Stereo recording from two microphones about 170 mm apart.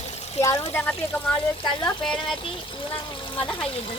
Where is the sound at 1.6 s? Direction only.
30° left (ahead or behind).